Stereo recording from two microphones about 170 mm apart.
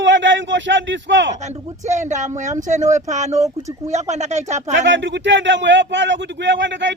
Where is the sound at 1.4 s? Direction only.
45° right (ahead or behind).